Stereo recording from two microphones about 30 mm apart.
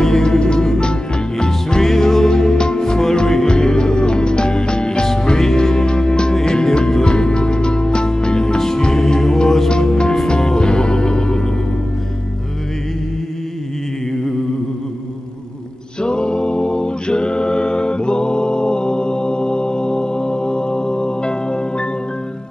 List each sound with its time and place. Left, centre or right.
0.0 s music: centre
9.7 s music: left
16.0 s a capella: left